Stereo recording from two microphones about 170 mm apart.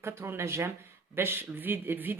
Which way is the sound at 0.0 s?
15° right (ahead or behind).